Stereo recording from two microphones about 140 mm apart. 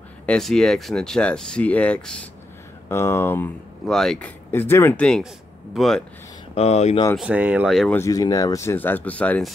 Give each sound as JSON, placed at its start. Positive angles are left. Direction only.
{"t": 0.3, "sound": "speech", "side_deg": 0}
{"t": 2.9, "sound": "speech", "side_deg": 20}
{"t": 3.8, "sound": "speech", "side_deg": 5}
{"t": 4.5, "sound": "speech", "side_deg": 15}
{"t": 5.0, "sound": "speech", "side_deg": 5}
{"t": 6.5, "sound": "speech", "side_deg": 50}
{"t": 7.2, "sound": "speech", "side_deg": -10}
{"t": 7.9, "sound": "speech", "side_deg": 20}